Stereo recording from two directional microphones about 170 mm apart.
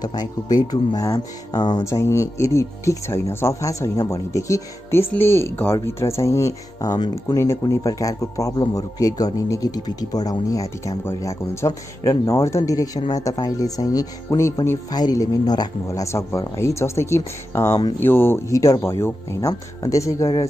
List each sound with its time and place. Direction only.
0.0 s speech: 25° left (ahead or behind)